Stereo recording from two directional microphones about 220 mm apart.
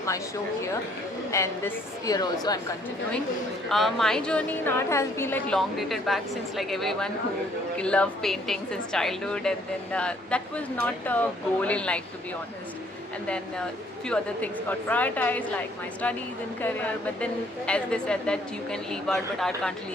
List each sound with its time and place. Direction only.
1.3 s a woman's voice: 15° left (ahead or behind)
3.7 s a woman's voice: centre (ahead or behind)
14.1 s a woman's voice: 5° left (ahead or behind)